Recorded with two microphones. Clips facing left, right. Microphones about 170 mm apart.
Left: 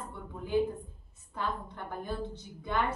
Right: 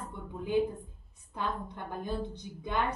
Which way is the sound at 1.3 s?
15° right (ahead or behind).